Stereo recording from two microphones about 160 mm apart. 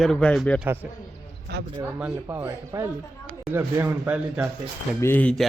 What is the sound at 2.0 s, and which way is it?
Speech, 15° right (ahead or behind).